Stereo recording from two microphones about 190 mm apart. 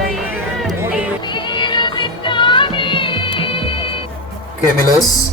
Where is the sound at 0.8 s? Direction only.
5° right (ahead or behind).